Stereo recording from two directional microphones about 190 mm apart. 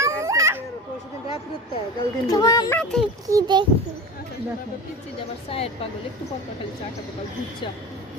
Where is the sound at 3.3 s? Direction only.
20° right (ahead or behind).